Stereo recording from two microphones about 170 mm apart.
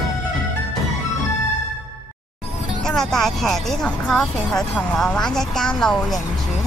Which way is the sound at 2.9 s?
5° left (ahead or behind).